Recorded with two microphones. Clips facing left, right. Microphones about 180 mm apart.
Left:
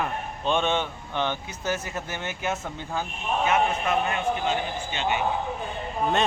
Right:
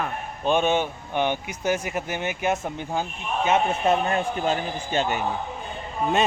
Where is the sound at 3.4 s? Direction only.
30° right (ahead or behind).